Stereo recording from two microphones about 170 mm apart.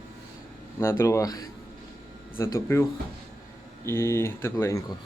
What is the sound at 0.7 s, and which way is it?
Speech, 15° left (ahead or behind).